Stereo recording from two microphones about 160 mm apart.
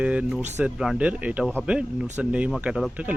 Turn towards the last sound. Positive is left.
turn(degrees=-5)  # may be behind; listen again after turning